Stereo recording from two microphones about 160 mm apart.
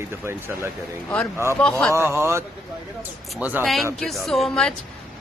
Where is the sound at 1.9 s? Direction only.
15° right (ahead or behind).